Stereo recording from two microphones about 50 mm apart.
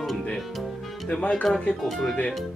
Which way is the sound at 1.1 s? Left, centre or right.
Left.